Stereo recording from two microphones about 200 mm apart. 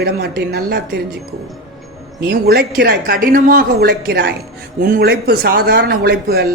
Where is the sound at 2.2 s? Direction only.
55° right (ahead or behind).